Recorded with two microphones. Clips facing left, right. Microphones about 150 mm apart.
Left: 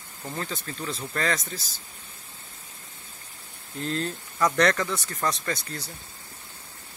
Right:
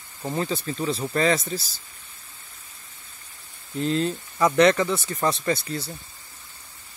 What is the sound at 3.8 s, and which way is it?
Speech, 10° right (ahead or behind).